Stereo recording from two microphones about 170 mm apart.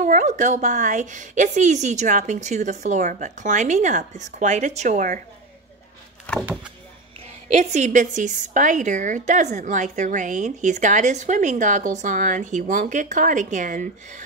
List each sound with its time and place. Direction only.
0.0 s a woman's voice: 50° right (ahead or behind)
7.2 s a woman's voice: 45° right (ahead or behind)